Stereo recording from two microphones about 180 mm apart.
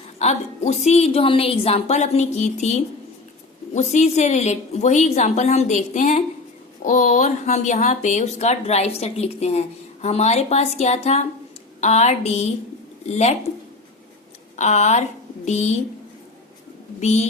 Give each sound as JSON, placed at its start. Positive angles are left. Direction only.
{"t": 0.2, "sound": "speech", "side_deg": 40}
{"t": 14.5, "sound": "speech", "side_deg": 40}
{"t": 17.0, "sound": "speech", "side_deg": 40}